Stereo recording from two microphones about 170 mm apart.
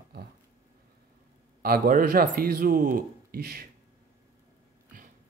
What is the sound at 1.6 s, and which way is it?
Speech, 60° right (ahead or behind).